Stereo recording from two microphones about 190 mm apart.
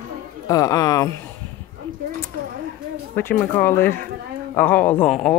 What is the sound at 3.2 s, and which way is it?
Speech, 10° left (ahead or behind).